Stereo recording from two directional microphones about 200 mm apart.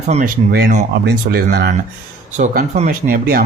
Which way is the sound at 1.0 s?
50° right (ahead or behind).